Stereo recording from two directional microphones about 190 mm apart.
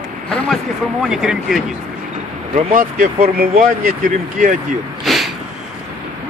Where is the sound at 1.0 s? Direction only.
Centre (ahead or behind).